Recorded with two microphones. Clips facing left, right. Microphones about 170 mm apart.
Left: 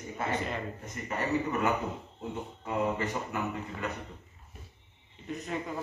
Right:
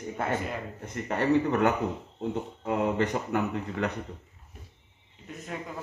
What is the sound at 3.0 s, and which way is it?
Speech, 70° right (ahead or behind).